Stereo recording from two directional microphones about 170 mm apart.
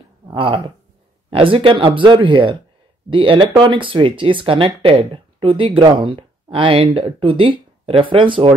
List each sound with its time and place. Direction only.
0.3 s speech: 30° right (ahead or behind)